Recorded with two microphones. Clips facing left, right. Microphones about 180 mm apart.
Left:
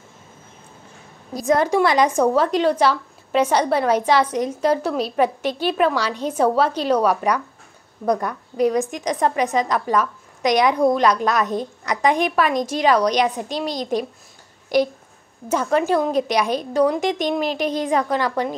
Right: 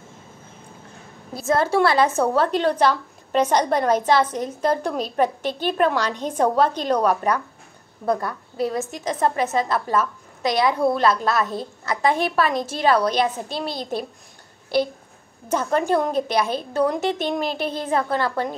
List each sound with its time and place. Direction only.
1.4 s a woman's voice: 15° left (ahead or behind)
15.9 s a woman's voice: 10° left (ahead or behind)